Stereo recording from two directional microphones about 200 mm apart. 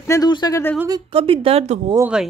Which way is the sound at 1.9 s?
10° right (ahead or behind).